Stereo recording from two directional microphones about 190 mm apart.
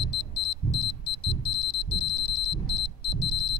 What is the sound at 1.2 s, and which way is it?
Alarm clock, 70° right (ahead or behind).